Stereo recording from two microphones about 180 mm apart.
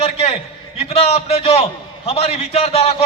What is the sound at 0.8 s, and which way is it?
A man's voice, 35° left (ahead or behind).